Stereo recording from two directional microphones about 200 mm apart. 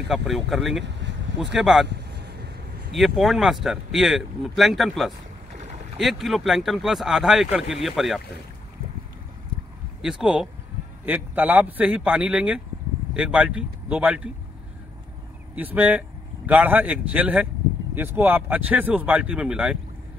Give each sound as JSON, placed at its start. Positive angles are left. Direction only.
{"t": 0.1, "sound": "speech", "side_deg": 0}
{"t": 1.9, "sound": "vehicle", "side_deg": -60}
{"t": 2.9, "sound": "speech", "side_deg": 0}
{"t": 10.0, "sound": "a man's voice", "side_deg": -5}
{"t": 15.5, "sound": "a man's voice", "side_deg": -10}